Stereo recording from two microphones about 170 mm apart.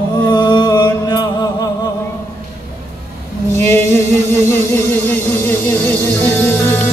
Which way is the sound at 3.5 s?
15° left (ahead or behind).